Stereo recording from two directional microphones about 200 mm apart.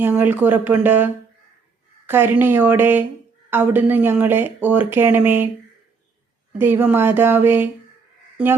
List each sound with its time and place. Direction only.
0.0 s speech: 10° right (ahead or behind)
6.6 s speech: 10° right (ahead or behind)